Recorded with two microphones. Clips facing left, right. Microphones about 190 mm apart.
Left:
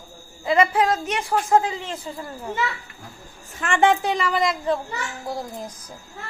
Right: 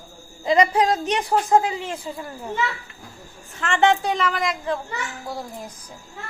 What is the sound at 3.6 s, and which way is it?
Speech, 10° left (ahead or behind).